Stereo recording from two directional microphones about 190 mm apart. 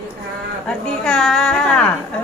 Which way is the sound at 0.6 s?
5° left (ahead or behind).